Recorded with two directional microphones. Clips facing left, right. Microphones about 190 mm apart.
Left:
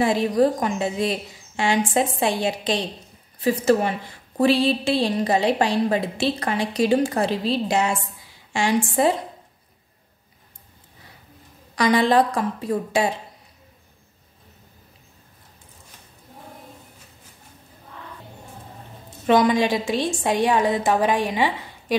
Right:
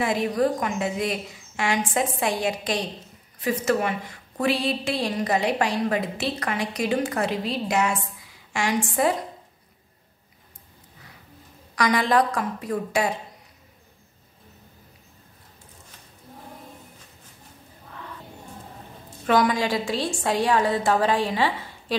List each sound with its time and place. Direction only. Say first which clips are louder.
0.0 s a woman's voice: left 4 dB; 30° left (ahead or behind)
11.7 s a woman's voice: left 3 dB; 30° left (ahead or behind)
19.2 s a woman's voice: left 4 dB; 20° left (ahead or behind)